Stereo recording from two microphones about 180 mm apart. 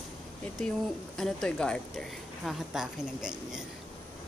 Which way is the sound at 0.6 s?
Centre (ahead or behind).